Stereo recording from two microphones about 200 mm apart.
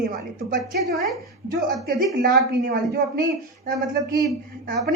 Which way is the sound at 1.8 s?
45° right (ahead or behind).